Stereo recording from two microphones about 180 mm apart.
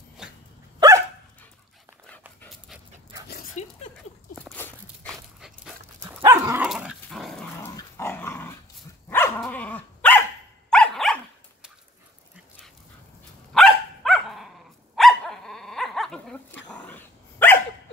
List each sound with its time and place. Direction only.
0.2 s dog: centre (ahead or behind)
0.7 s dog: 20° right (ahead or behind)
3.3 s dog: 50° left (ahead or behind)
4.4 s dog: 10° left (ahead or behind)
6.2 s dog: 15° right (ahead or behind)
6.6 s dog: 5° right (ahead or behind)
7.6 s dog: 15° left (ahead or behind)
13.5 s dog: centre (ahead or behind)